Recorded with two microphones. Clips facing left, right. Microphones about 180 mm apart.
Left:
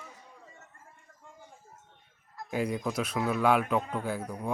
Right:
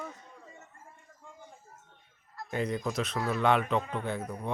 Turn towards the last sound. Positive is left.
turn(degrees=5)  # may be behind; listen again after turning